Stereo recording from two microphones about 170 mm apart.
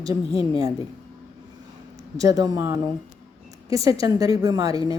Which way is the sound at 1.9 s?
20° right (ahead or behind).